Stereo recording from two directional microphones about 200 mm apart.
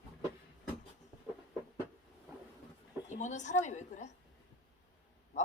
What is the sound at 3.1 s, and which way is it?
A woman's voice, 35° left (ahead or behind).